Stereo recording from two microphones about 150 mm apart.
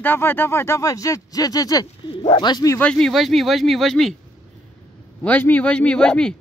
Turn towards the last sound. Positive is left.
turn(degrees=5)  # may be behind; listen again after turning